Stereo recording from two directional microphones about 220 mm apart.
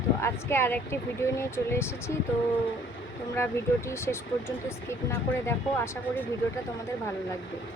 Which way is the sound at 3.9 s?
10° left (ahead or behind).